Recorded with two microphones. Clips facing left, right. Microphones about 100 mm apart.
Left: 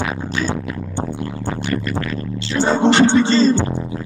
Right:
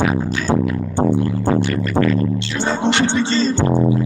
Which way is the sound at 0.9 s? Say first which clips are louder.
Right 9 dB; 30° right (ahead or behind).